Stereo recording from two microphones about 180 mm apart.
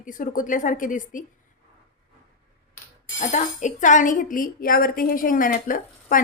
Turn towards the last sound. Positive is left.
turn(degrees=50)  # may be behind; listen again after turning